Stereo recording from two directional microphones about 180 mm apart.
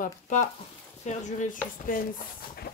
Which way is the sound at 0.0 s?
45° left (ahead or behind).